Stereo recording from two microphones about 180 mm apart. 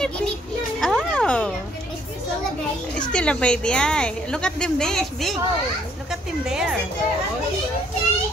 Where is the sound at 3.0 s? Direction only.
5° left (ahead or behind).